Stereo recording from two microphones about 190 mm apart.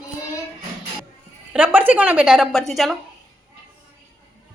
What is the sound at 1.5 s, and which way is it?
A woman's voice, 10° right (ahead or behind).